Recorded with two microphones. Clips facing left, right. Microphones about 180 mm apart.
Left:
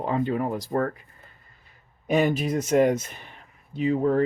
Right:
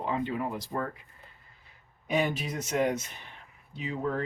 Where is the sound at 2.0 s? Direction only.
45° left (ahead or behind).